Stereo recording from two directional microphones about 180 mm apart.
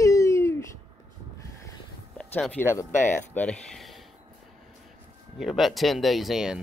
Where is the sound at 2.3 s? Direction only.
10° left (ahead or behind).